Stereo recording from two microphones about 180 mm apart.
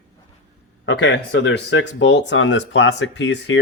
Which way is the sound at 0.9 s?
90° left.